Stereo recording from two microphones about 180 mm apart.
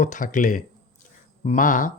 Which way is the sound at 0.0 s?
45° left (ahead or behind).